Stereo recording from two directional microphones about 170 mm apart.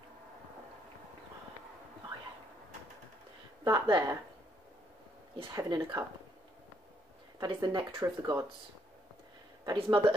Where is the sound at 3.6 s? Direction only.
25° right (ahead or behind).